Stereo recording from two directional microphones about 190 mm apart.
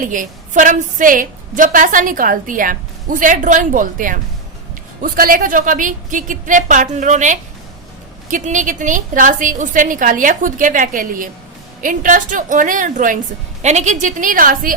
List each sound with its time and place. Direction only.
0.0 s a woman's voice: 45° right (ahead or behind)